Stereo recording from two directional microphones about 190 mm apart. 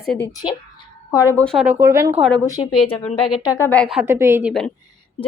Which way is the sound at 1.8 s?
15° right (ahead or behind).